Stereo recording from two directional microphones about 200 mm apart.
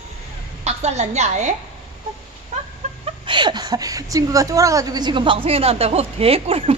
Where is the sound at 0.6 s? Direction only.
35° right (ahead or behind).